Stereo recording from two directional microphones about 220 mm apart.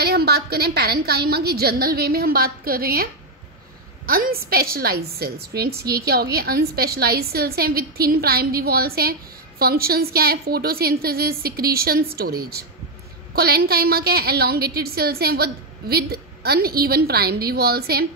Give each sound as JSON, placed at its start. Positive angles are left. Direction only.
{"t": 0.0, "sound": "a woman's voice", "side_deg": -45}